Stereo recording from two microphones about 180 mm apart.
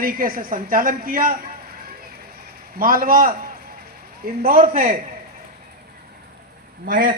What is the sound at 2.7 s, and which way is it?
Speech, 55° right (ahead or behind).